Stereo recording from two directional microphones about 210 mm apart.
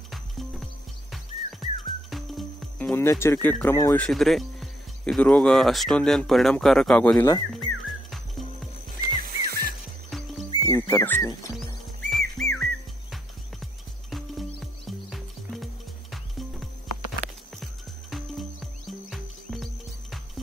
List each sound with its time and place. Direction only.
0.1 s music: centre (ahead or behind)
2.0 s speech: centre (ahead or behind)
7.5 s music: centre (ahead or behind)
9.0 s music: 45° right (ahead or behind)
10.0 s music: centre (ahead or behind)
10.7 s speech: 15° left (ahead or behind)
11.5 s music: centre (ahead or behind)
14.9 s music: centre (ahead or behind)
18.1 s music: centre (ahead or behind)